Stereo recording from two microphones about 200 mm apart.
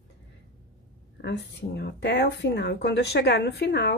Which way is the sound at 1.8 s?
55° left (ahead or behind).